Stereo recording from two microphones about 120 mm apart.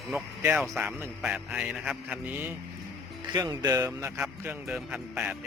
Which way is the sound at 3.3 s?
35° right (ahead or behind).